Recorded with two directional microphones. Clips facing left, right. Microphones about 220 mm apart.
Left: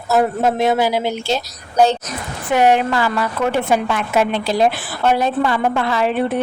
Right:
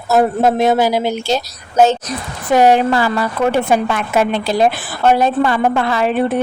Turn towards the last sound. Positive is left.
turn(degrees=-50)  # may be behind; listen again after turning